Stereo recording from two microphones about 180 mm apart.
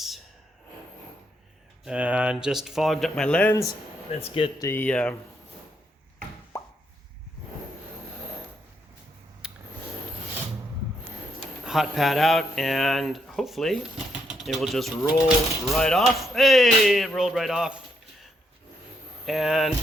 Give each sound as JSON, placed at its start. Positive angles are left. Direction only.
{"t": 1.8, "sound": "speech", "side_deg": -5}
{"t": 4.2, "sound": "speech", "side_deg": 30}
{"t": 4.6, "sound": "speech", "side_deg": 10}
{"t": 11.6, "sound": "speech", "side_deg": 0}
{"t": 19.2, "sound": "speech", "side_deg": 0}